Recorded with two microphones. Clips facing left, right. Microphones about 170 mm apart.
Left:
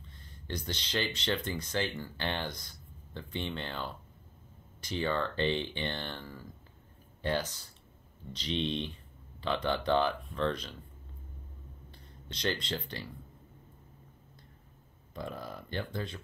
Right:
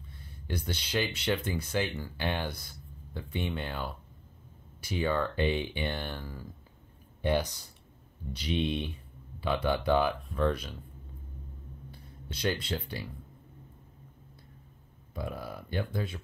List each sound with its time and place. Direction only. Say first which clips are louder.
0.0 s speech: right 3 dB; 10° right (ahead or behind)
11.9 s speech: right 2 dB; 5° right (ahead or behind)
15.1 s speech: right 2 dB; 10° right (ahead or behind)